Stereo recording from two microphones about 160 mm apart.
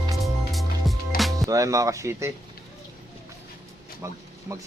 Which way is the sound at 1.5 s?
20° right (ahead or behind).